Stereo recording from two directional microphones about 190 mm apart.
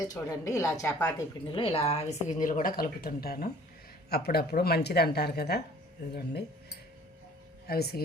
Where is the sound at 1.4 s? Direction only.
25° left (ahead or behind).